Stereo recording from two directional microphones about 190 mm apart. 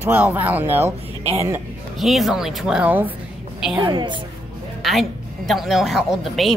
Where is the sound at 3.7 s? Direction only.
25° right (ahead or behind).